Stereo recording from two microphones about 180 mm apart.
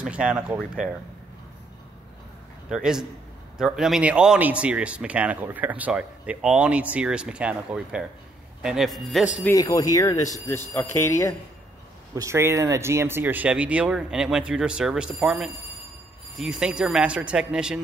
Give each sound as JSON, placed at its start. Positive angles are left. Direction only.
{"t": 0.0, "sound": "speech", "side_deg": -5}
{"t": 2.7, "sound": "a man's voice", "side_deg": -5}
{"t": 9.6, "sound": "speech", "side_deg": 20}
{"t": 12.2, "sound": "a man's voice", "side_deg": -15}